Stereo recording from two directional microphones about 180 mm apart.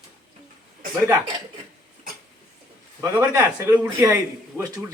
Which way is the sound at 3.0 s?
15° right (ahead or behind).